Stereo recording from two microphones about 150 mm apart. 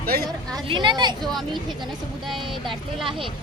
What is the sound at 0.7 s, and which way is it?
Speech, 30° right (ahead or behind).